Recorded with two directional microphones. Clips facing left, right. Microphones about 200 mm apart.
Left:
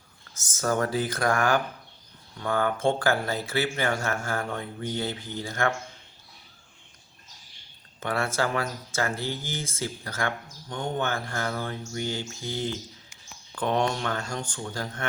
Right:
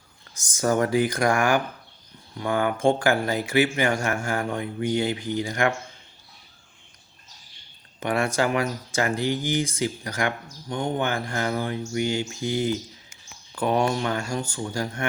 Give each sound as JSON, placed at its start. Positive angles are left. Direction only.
{"t": 0.3, "sound": "speech", "side_deg": -15}
{"t": 7.9, "sound": "speech", "side_deg": -15}